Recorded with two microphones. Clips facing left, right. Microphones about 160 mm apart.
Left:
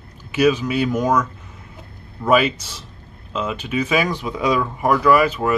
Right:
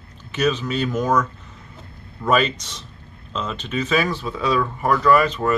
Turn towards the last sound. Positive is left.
turn(degrees=10)  # may be behind; listen again after turning